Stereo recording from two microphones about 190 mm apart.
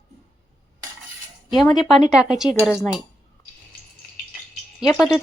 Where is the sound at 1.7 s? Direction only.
Centre (ahead or behind).